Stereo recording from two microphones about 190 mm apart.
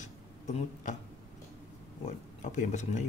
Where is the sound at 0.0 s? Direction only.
40° left (ahead or behind).